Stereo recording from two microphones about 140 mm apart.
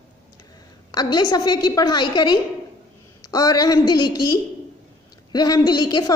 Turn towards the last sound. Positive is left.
turn(degrees=30)  # may be behind; listen again after turning